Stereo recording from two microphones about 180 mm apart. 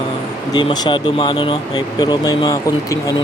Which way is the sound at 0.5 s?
25° left (ahead or behind).